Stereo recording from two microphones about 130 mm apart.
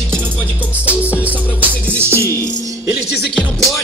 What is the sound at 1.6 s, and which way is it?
Music, 20° right (ahead or behind).